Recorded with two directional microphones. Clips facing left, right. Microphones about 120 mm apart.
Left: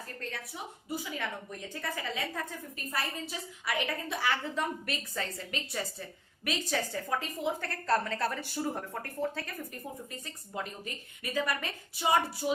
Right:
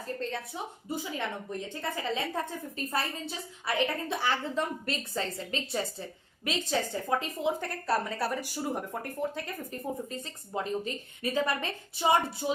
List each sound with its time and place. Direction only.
0.2 s a woman's voice: 25° right (ahead or behind)
10.1 s a woman's voice: 25° right (ahead or behind)